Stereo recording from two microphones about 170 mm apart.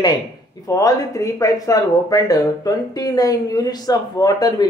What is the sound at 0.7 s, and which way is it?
Speech, 20° left (ahead or behind).